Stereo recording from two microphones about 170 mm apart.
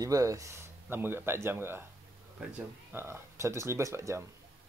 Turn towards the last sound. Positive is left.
turn(degrees=-20)  # may be behind; listen again after turning